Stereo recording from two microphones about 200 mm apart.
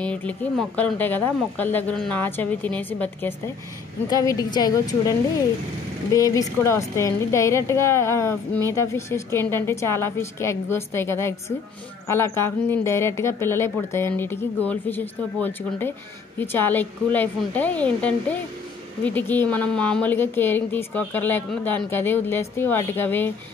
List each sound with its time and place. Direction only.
0.0 s a woman's voice: 5° left (ahead or behind)
6.1 s a woman's voice: 15° left (ahead or behind)